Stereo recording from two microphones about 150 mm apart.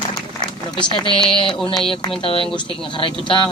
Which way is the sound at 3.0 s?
35° left (ahead or behind).